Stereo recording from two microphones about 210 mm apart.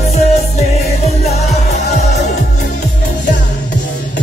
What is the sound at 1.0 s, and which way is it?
Music, 30° left (ahead or behind).